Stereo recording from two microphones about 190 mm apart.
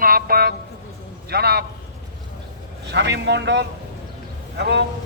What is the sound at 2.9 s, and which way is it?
A man's voice, 65° right (ahead or behind).